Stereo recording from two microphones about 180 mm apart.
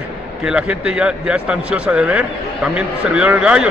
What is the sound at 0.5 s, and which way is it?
A man's voice, 5° right (ahead or behind).